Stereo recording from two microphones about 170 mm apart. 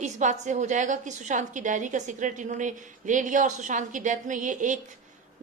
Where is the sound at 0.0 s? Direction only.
45° right (ahead or behind).